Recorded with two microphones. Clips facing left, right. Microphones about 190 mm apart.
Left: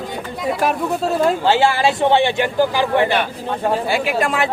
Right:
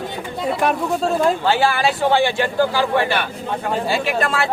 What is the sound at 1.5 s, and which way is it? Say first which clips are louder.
A man's voice: left 2 dB; 25° left (ahead or behind).